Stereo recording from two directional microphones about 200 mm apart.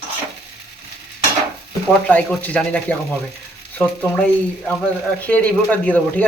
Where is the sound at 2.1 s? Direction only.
5° left (ahead or behind).